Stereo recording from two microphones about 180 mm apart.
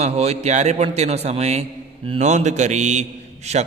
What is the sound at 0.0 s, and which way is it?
A man's voice, 35° right (ahead or behind).